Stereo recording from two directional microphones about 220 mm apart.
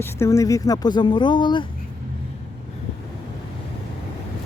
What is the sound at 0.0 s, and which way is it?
Speech, 10° left (ahead or behind).